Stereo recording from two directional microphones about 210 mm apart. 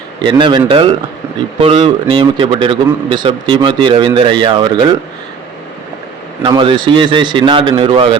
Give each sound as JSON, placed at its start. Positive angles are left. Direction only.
{"t": 0.2, "sound": "a man's voice", "side_deg": -25}
{"t": 6.4, "sound": "a man's voice", "side_deg": -25}